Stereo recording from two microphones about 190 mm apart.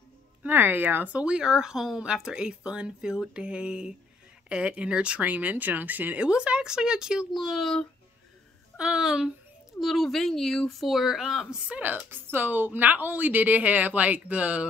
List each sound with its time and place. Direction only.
0.4 s a woman's voice: 10° right (ahead or behind)